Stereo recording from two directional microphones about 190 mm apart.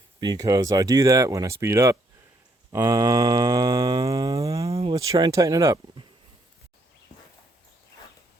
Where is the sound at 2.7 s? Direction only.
20° right (ahead or behind).